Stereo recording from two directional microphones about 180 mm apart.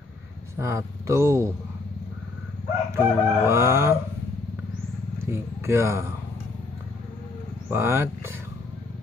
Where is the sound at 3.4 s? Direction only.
15° right (ahead or behind).